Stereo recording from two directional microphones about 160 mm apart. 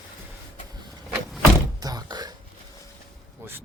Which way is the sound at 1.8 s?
25° right (ahead or behind).